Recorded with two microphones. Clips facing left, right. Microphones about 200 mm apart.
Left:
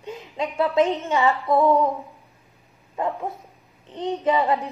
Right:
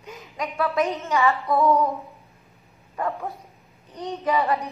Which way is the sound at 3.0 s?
20° left (ahead or behind).